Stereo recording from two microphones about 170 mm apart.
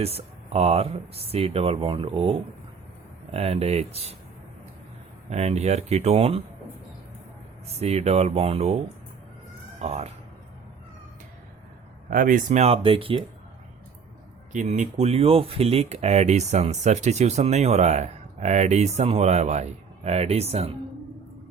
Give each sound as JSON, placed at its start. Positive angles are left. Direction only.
{"t": 0.0, "sound": "speech", "side_deg": -35}
{"t": 3.3, "sound": "speech", "side_deg": -40}
{"t": 5.3, "sound": "speech", "side_deg": -40}
{"t": 7.8, "sound": "speech", "side_deg": -40}
{"t": 9.8, "sound": "speech", "side_deg": -40}
{"t": 12.1, "sound": "speech", "side_deg": -50}
{"t": 14.5, "sound": "speech", "side_deg": -45}